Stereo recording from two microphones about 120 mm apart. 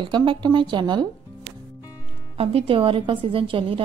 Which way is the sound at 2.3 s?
55° right (ahead or behind).